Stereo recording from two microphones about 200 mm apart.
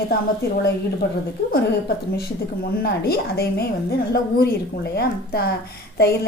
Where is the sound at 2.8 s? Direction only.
50° left (ahead or behind).